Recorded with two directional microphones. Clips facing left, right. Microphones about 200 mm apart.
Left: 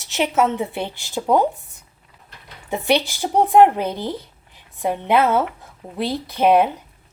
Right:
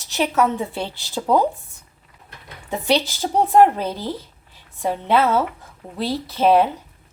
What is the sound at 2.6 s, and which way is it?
A woman's voice, 15° left (ahead or behind).